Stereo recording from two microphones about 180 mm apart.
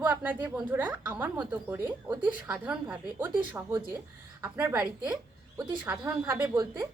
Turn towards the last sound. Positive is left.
turn(degrees=-10)  # may be behind; listen again after turning